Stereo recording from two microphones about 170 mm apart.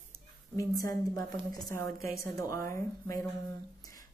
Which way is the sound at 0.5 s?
20° left (ahead or behind).